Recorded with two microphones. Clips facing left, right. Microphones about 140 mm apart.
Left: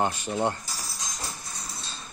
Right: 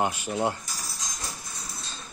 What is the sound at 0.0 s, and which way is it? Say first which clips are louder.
Speech: even; 10° right (ahead or behind).